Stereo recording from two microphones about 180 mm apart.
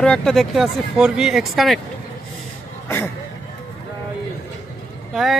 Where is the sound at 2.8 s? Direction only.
15° left (ahead or behind).